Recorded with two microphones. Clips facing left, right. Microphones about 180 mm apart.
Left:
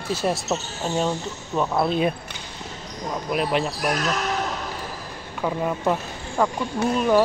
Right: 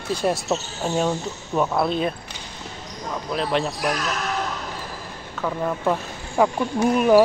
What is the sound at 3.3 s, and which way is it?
Speech, 10° left (ahead or behind).